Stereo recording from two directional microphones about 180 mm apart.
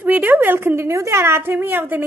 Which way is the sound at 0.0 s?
10° right (ahead or behind).